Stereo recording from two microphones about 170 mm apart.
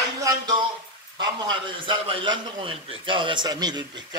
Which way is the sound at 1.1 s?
25° right (ahead or behind).